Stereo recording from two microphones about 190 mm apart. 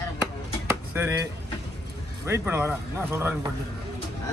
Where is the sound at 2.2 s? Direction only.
10° right (ahead or behind).